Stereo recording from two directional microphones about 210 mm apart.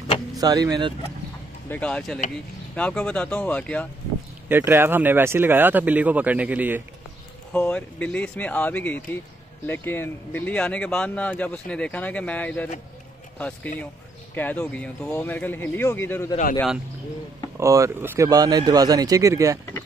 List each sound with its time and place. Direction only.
0.4 s speech: 20° right (ahead or behind)
1.7 s speech: 5° left (ahead or behind)
4.5 s speech: 10° right (ahead or behind)
7.5 s speech: 5° left (ahead or behind)
16.5 s speech: centre (ahead or behind)
17.6 s speech: 15° right (ahead or behind)